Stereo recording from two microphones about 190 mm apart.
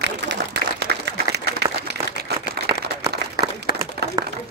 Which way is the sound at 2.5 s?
60° right (ahead or behind).